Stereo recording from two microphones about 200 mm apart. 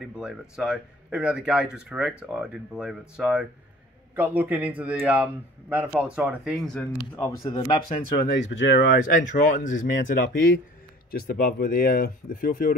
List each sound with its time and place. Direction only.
0.2 s speech: 5° right (ahead or behind)
7.0 s speech: 15° left (ahead or behind)
7.4 s speech: 25° left (ahead or behind)
8.2 s speech: 65° left (ahead or behind)
9.0 s speech: 40° left (ahead or behind)
11.1 s speech: 50° left (ahead or behind)